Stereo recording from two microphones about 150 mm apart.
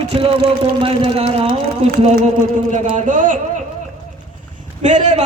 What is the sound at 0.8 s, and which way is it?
Speech, 40° right (ahead or behind).